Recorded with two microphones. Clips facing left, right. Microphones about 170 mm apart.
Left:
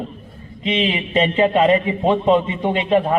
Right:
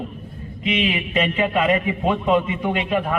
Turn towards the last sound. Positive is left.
turn(degrees=30)  # may be behind; listen again after turning